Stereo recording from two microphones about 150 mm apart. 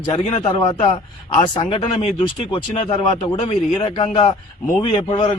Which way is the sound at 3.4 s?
40° left (ahead or behind).